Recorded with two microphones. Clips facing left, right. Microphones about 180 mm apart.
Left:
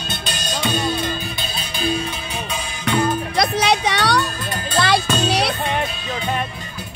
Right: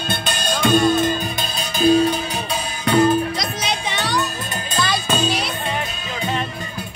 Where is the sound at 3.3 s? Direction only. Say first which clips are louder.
Left 7 dB; 65° left (ahead or behind).